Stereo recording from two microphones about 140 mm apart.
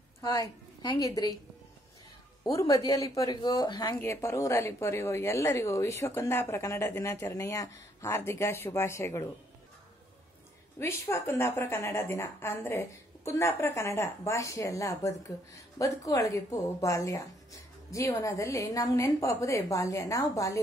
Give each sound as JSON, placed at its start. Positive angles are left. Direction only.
{"t": 0.2, "sound": "a woman's voice", "side_deg": 25}
{"t": 2.4, "sound": "a woman's voice", "side_deg": 30}
{"t": 4.0, "sound": "a woman's voice", "side_deg": 20}
{"t": 10.8, "sound": "a woman's voice", "side_deg": 20}